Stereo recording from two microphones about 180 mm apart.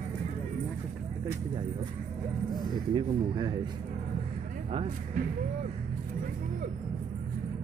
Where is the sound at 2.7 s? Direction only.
25° right (ahead or behind).